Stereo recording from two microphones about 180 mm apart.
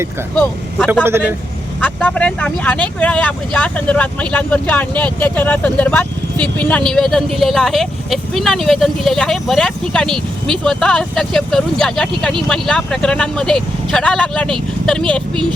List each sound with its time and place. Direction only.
1.0 s speech: 15° right (ahead or behind)
1.8 s speech: 5° left (ahead or behind)